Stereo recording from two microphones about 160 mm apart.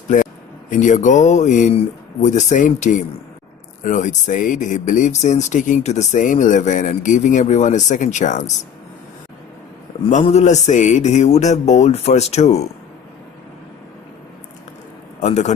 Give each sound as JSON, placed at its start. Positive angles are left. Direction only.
{"t": 0.1, "sound": "speech", "side_deg": 55}
{"t": 10.0, "sound": "speech", "side_deg": 40}
{"t": 15.1, "sound": "a man's voice", "side_deg": 45}